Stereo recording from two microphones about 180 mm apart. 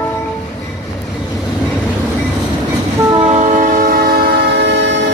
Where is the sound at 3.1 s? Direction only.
40° right (ahead or behind).